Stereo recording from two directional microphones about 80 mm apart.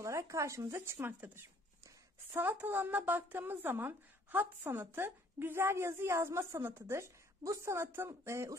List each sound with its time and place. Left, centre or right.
0.0 s a woman's voice: right